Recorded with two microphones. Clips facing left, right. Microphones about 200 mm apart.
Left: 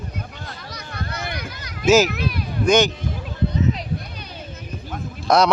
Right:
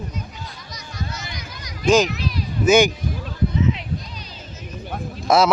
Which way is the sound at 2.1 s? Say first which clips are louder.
Left 1 dB; 55° left (ahead or behind).